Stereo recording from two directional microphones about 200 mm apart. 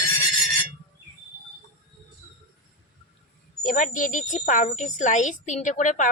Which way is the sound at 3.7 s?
40° left (ahead or behind).